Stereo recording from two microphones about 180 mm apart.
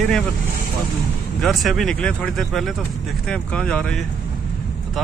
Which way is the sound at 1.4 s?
Centre (ahead or behind).